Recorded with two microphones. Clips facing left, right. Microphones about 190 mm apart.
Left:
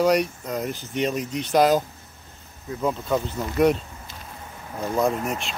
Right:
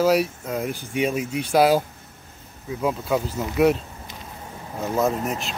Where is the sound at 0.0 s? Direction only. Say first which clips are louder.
Right 1 dB; 5° right (ahead or behind).